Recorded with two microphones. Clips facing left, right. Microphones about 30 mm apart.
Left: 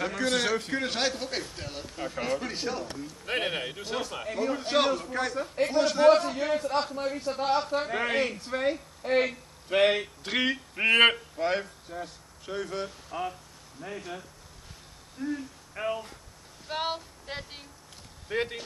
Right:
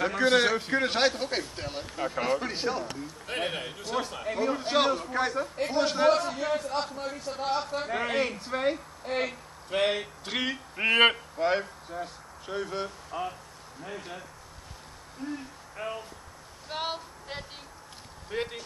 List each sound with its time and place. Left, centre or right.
0.1 s speech: centre
3.3 s a man's voice: centre
4.3 s a man's voice: centre
6.0 s a man's voice: centre
9.0 s speech: centre
13.8 s speech: centre
15.2 s speech: right
15.7 s speech: centre
16.6 s female singing: centre
18.3 s a man's voice: centre